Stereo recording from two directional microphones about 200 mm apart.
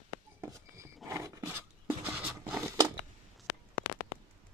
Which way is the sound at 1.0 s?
15° right (ahead or behind).